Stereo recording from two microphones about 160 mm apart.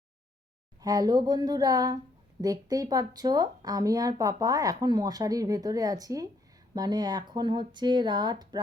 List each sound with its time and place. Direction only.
0.8 s speech: 25° right (ahead or behind)